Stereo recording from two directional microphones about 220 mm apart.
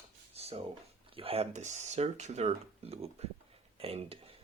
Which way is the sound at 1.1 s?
25° right (ahead or behind).